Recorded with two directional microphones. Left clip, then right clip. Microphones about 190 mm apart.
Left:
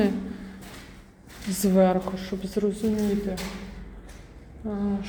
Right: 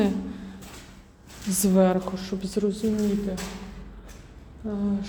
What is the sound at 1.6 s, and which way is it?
A woman's voice, 30° right (ahead or behind).